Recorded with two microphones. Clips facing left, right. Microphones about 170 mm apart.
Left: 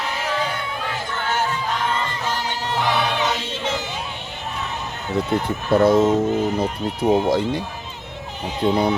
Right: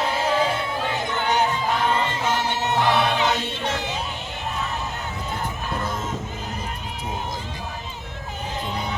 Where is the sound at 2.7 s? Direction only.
Centre (ahead or behind).